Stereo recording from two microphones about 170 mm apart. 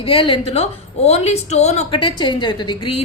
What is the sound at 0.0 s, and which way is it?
A woman's voice, 30° left (ahead or behind).